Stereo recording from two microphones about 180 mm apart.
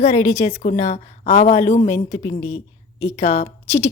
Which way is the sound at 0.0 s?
35° left (ahead or behind).